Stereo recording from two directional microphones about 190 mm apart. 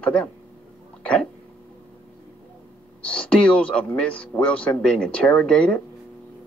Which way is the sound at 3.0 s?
5° left (ahead or behind).